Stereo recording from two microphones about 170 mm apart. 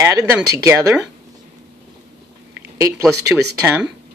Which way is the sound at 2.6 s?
15° right (ahead or behind).